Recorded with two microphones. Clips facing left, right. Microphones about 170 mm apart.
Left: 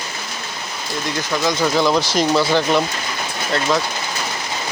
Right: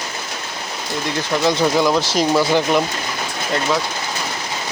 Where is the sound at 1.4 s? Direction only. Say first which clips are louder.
Right 2 dB; 20° right (ahead or behind).